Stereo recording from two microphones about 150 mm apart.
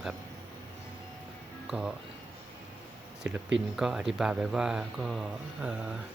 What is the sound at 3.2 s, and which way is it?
Speech, 5° right (ahead or behind).